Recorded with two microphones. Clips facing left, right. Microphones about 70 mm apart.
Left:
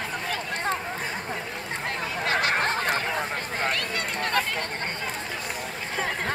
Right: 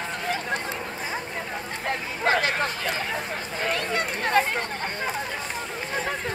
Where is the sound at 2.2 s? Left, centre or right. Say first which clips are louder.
Right 3 dB; right.